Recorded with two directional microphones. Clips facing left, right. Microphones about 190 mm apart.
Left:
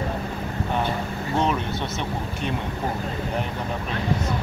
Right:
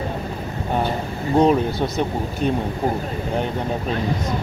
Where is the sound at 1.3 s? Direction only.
35° right (ahead or behind).